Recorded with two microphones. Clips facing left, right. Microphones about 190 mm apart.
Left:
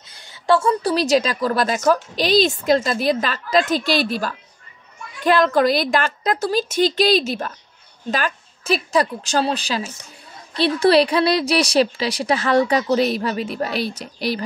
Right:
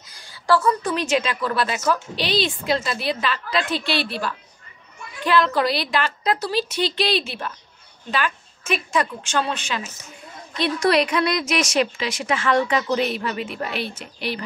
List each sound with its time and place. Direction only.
0.1 s a woman's voice: 20° left (ahead or behind); by 14.4 s 35° left (ahead or behind)